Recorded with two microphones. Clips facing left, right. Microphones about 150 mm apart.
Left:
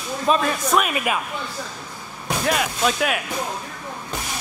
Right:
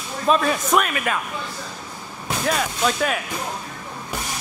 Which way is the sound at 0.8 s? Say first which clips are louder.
Left 1 dB; 15° left (ahead or behind).